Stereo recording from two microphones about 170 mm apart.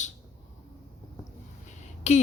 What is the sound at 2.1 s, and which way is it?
Speech, 40° left (ahead or behind).